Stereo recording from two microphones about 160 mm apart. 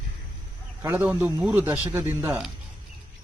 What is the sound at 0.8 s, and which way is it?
Speech, 10° right (ahead or behind).